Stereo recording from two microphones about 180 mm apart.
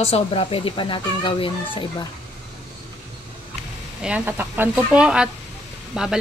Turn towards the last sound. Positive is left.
turn(degrees=-5)  # may be behind; listen again after turning